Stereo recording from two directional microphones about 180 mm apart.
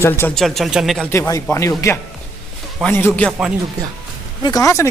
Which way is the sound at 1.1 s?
20° left (ahead or behind).